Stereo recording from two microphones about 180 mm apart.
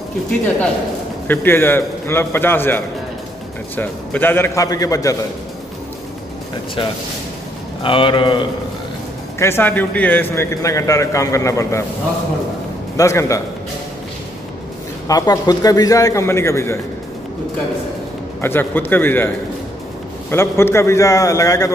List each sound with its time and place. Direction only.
1.2 s a man's voice: 10° left (ahead or behind)
6.8 s a man's voice: 30° left (ahead or behind)
9.4 s a man's voice: 10° left (ahead or behind)
12.9 s a man's voice: 15° left (ahead or behind)
15.0 s a man's voice: 20° left (ahead or behind)
18.4 s a man's voice: 10° left (ahead or behind)